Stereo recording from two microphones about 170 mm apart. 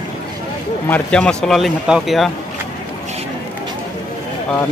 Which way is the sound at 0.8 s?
10° left (ahead or behind).